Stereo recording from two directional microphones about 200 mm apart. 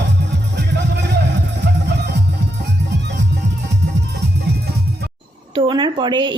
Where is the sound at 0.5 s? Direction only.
60° right (ahead or behind).